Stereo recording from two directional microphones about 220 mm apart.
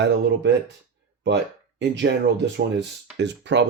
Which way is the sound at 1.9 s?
55° right (ahead or behind).